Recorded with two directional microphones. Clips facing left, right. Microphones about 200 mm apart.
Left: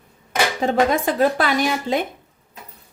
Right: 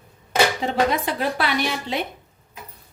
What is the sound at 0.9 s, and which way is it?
A woman's voice, 45° left (ahead or behind).